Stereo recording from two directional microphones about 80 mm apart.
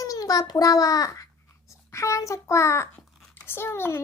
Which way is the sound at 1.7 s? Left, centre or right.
Left.